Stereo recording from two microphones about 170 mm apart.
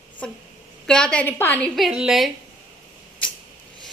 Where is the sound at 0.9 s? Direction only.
5° left (ahead or behind).